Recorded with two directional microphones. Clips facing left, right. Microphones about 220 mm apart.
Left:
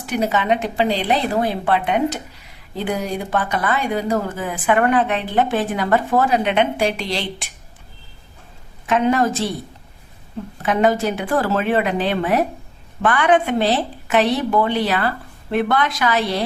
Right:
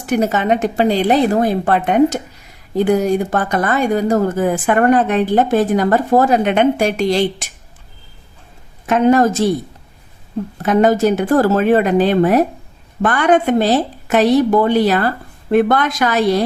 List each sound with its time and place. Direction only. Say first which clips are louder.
0.0 s speech: right 4 dB; 45° right (ahead or behind)
8.9 s speech: right 5 dB; 45° right (ahead or behind)
10.6 s speech: right 5 dB; 40° right (ahead or behind)